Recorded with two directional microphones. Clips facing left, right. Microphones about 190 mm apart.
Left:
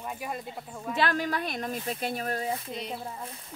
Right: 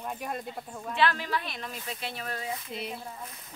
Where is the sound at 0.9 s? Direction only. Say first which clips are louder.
Even; 45° left (ahead or behind).